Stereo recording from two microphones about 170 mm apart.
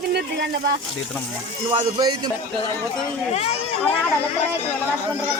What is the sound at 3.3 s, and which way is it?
Speech, 35° left (ahead or behind).